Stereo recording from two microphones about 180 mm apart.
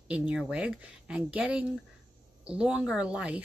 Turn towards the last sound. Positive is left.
turn(degrees=-5)  # may be behind; listen again after turning